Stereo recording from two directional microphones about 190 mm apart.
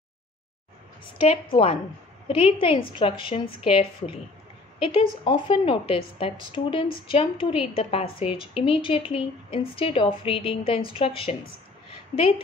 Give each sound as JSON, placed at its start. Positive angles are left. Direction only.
{"t": 1.1, "sound": "a woman's voice", "side_deg": 30}